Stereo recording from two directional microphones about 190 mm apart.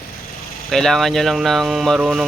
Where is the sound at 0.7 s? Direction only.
Centre (ahead or behind).